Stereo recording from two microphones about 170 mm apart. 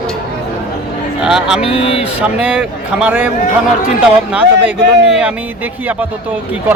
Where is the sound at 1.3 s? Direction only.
5° right (ahead or behind).